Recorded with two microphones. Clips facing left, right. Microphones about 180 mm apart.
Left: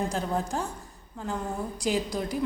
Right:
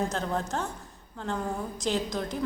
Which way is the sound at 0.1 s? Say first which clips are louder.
Left 1 dB; 10° left (ahead or behind).